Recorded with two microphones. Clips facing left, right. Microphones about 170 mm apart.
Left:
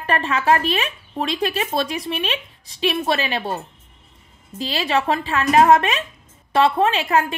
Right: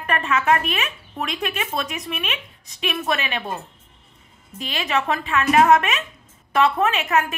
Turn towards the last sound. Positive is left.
turn(degrees=30)  # may be behind; listen again after turning